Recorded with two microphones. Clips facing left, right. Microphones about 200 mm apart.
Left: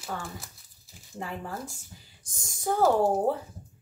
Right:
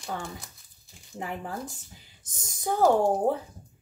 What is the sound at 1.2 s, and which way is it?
Speech, 15° right (ahead or behind).